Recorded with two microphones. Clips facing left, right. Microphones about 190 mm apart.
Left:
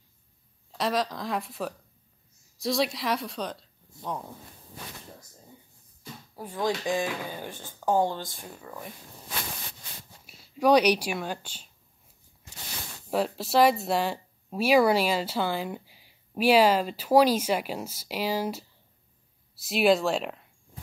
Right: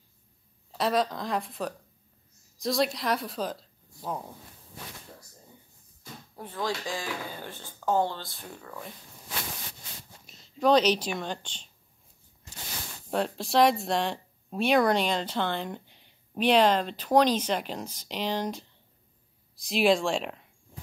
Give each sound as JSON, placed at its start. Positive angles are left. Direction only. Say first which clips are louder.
{"t": 0.7, "sound": "speech", "louder": "right 1 dB", "side_deg": 0}
{"t": 6.3, "sound": "speech", "louder": "left 3 dB", "side_deg": 10}
{"t": 10.2, "sound": "speech", "louder": "left 1 dB", "side_deg": 10}
{"t": 13.1, "sound": "speech", "louder": "left 1 dB", "side_deg": 5}